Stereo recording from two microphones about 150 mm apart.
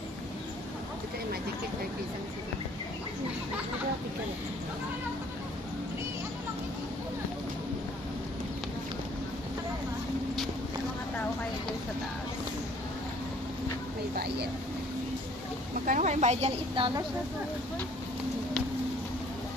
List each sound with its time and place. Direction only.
15.8 s a woman's voice: 55° right (ahead or behind); by 16.9 s 40° right (ahead or behind)